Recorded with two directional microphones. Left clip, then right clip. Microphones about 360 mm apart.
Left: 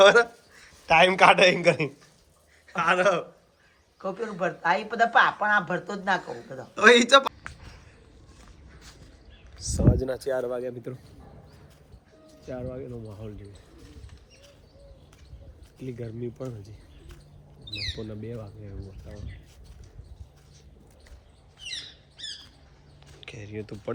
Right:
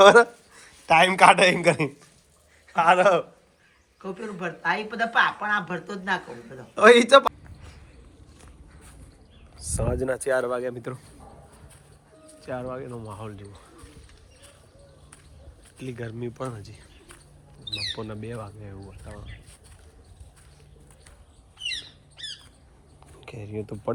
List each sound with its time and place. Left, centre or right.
0.0 s a man's voice: centre
3.9 s speech: left
6.2 s speech: centre
9.6 s a sound: centre
9.9 s speech: centre
12.5 s speech: centre
15.8 s speech: centre
17.9 s speech: centre
21.6 s squawk: centre
23.2 s speech: centre